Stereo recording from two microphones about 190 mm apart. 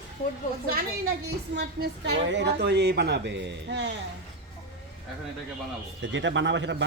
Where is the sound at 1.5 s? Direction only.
65° right (ahead or behind).